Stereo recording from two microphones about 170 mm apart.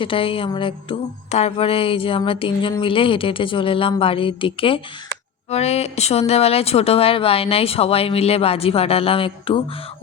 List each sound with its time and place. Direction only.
0.0 s speech: 30° left (ahead or behind)